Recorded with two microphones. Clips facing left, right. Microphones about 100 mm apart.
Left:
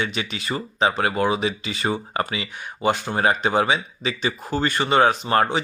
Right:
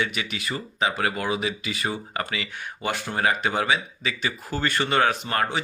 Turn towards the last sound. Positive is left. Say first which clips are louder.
# left 6 dB
turn(degrees=25)  # may be behind; listen again after turning